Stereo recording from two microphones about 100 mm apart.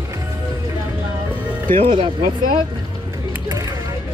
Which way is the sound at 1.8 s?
60° right (ahead or behind).